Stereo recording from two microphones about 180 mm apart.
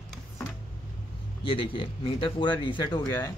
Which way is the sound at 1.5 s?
30° left (ahead or behind).